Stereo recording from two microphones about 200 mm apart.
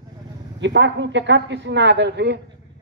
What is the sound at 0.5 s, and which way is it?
A man's voice, 65° right (ahead or behind).